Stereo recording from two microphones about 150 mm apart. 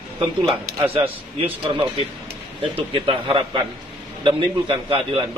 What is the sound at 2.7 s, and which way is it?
A man's voice, 35° right (ahead or behind).